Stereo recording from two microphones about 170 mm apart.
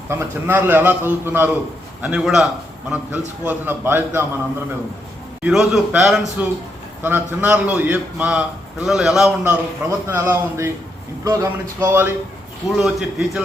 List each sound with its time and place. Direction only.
0.1 s a man's voice: 15° right (ahead or behind)
5.4 s a man's voice: 5° right (ahead or behind)